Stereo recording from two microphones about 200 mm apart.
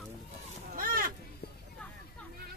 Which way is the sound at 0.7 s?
45° right (ahead or behind).